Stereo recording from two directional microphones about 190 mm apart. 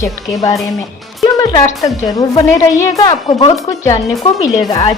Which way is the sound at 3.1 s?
30° left (ahead or behind).